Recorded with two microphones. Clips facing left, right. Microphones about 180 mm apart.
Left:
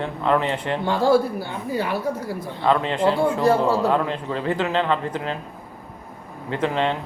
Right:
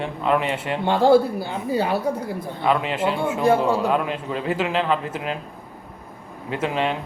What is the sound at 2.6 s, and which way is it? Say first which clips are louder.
A man's voice: left 2 dB; 15° right (ahead or behind).